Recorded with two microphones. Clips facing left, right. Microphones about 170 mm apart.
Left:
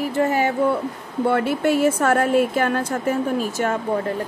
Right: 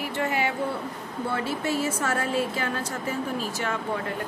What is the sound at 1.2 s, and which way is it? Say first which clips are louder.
Speech: left 9 dB; 60° left (ahead or behind).